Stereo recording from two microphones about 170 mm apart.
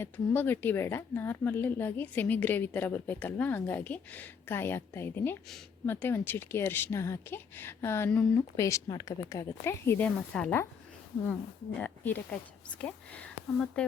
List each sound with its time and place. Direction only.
0.0 s speech: 10° left (ahead or behind)
11.8 s speech: 10° left (ahead or behind)